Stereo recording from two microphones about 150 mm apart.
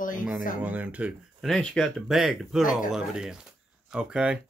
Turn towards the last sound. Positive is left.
turn(degrees=-5)  # may be behind; listen again after turning